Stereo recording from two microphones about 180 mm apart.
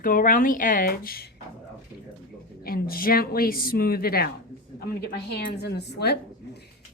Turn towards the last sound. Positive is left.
turn(degrees=65)  # may be behind; listen again after turning